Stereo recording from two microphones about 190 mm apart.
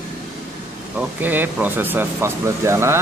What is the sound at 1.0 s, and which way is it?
Speech, 10° right (ahead or behind).